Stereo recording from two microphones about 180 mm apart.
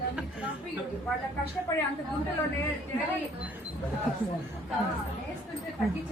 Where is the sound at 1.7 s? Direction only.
15° left (ahead or behind).